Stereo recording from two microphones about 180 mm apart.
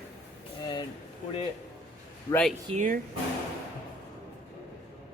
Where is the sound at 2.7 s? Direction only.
50° right (ahead or behind).